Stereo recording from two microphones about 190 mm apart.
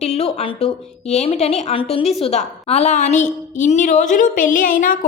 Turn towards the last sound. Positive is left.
turn(degrees=45)  # may be behind; listen again after turning